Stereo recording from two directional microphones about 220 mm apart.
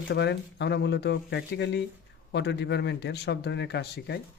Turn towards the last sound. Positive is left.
turn(degrees=50)  # may be behind; listen again after turning